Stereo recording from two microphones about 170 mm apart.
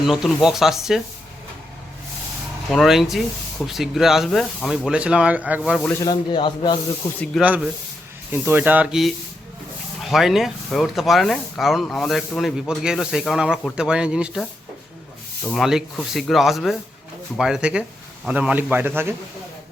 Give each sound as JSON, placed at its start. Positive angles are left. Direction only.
{"t": 0.0, "sound": "speech", "side_deg": 0}
{"t": 2.7, "sound": "speech", "side_deg": 0}
{"t": 6.0, "sound": "speech", "side_deg": 25}
{"t": 7.4, "sound": "speech", "side_deg": -10}
{"t": 15.4, "sound": "speech", "side_deg": 0}